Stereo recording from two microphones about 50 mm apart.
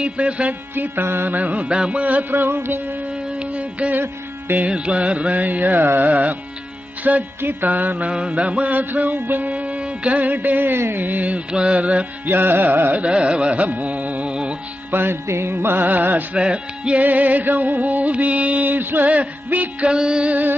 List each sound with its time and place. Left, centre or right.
0.0 s carnatic music: right
0.7 s music: right
3.9 s music: right
4.6 s music: right
8.1 s music: centre
12.3 s carnatic music: right
12.9 s carnatic music: right
13.7 s music: right
14.9 s music: right
15.2 s music: right
15.5 s music: right
16.3 s carnatic music: right
17.0 s music: right
19.9 s carnatic music: centre